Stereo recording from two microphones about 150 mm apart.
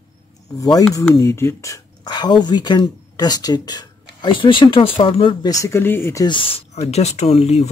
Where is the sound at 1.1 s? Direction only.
20° left (ahead or behind).